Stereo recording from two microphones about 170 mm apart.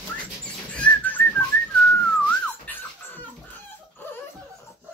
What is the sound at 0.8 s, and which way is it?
Whistling, 10° left (ahead or behind).